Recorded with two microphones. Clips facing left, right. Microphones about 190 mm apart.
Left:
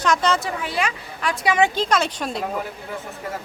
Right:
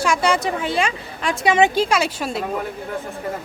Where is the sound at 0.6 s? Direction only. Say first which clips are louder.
Right 3 dB; 25° right (ahead or behind).